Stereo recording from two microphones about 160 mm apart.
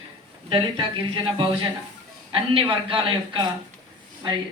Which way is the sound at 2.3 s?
35° right (ahead or behind).